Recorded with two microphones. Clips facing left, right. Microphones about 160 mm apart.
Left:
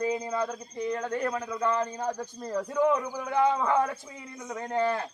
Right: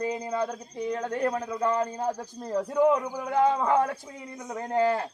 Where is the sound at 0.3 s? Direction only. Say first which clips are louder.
Right 1 dB; 20° right (ahead or behind).